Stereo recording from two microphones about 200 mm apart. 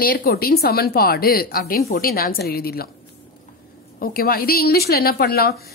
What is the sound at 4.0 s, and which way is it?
A woman's voice, 50° left (ahead or behind).